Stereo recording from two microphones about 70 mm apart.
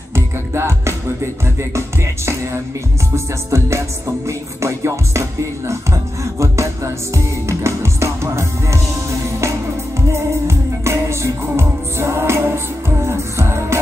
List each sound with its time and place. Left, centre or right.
0.1 s music: right
3.4 s music: right
10.0 s music: right